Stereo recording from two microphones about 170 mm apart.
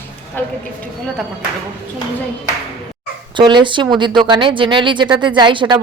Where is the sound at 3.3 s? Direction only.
30° right (ahead or behind).